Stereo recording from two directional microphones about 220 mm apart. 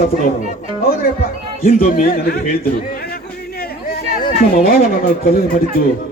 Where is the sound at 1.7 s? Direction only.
40° left (ahead or behind).